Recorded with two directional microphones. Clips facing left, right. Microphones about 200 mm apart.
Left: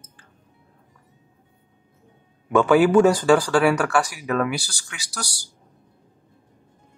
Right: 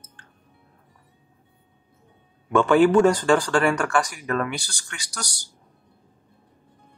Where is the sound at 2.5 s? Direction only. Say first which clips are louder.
Left 1 dB; 5° left (ahead or behind).